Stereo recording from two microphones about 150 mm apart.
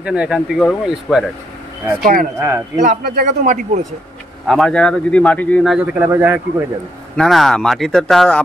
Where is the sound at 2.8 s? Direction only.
65° right (ahead or behind).